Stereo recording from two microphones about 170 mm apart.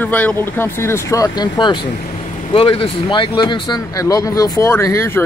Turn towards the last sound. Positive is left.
turn(degrees=15)  # may be behind; listen again after turning